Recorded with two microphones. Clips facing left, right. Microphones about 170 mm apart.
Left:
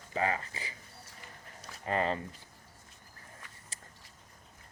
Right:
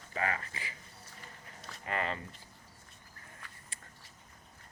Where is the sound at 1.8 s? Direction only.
30° left (ahead or behind).